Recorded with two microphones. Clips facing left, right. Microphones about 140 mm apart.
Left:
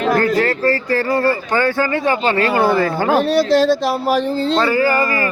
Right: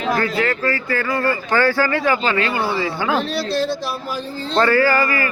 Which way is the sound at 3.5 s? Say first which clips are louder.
Left 8 dB; 80° left.